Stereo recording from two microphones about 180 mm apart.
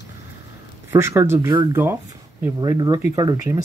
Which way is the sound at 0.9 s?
15° right (ahead or behind).